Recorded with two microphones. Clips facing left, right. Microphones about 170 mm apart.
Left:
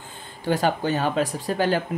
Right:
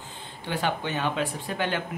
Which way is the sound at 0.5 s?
40° left (ahead or behind).